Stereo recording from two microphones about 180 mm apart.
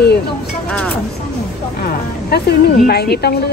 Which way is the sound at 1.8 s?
60° left (ahead or behind).